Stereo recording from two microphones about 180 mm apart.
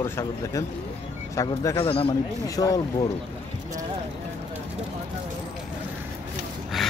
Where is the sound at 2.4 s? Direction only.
20° left (ahead or behind).